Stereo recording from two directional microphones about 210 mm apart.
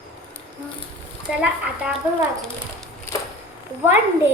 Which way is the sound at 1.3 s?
5° right (ahead or behind).